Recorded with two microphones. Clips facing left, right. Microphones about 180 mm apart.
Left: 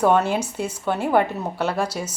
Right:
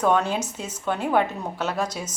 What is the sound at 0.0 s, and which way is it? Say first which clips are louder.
A woman's voice: left 3 dB; 10° left (ahead or behind).